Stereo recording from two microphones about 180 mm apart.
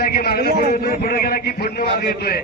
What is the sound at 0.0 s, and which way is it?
A man's voice, 60° left (ahead or behind).